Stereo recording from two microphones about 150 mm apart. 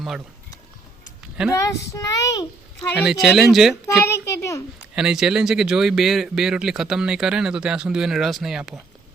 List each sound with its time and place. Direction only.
1.5 s a child's voice: 20° left (ahead or behind)
3.0 s speech: 5° right (ahead or behind)
3.8 s a sound: 20° left (ahead or behind)
4.9 s speech: 5° right (ahead or behind)